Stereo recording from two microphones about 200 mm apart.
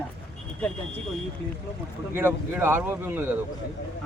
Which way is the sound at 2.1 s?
10° right (ahead or behind).